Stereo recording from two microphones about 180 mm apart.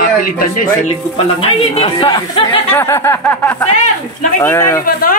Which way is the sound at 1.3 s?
35° left (ahead or behind).